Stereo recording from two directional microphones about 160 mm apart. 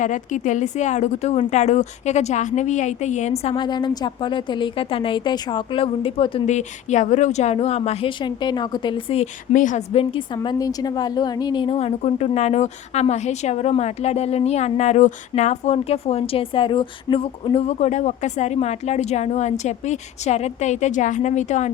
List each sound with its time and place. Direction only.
0.0 s a woman's voice: 50° left (ahead or behind)
3.5 s a woman's voice: 30° left (ahead or behind)
6.4 s a woman's voice: 50° left (ahead or behind)
9.9 s a woman's voice: 35° left (ahead or behind)